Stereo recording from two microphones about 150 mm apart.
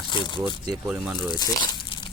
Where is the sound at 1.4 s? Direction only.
30° left (ahead or behind).